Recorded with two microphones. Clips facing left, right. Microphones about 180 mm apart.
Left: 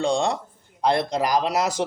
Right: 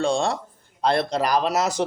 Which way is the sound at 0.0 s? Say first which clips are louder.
Even; 15° left (ahead or behind).